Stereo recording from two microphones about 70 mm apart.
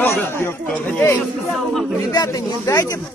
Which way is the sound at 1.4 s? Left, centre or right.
Centre.